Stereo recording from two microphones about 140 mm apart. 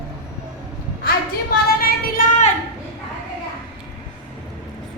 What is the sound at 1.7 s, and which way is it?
Child singing, 90° left.